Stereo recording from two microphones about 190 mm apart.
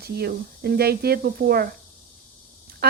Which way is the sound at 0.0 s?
55° right (ahead or behind).